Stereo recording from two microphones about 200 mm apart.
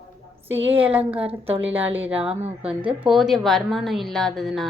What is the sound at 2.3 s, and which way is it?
Speech, 5° right (ahead or behind).